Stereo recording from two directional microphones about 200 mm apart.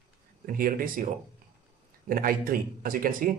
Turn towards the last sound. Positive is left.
turn(degrees=-45)  # may be behind; listen again after turning